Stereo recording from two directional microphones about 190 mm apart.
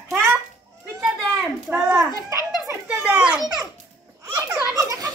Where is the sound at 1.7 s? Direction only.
10° right (ahead or behind).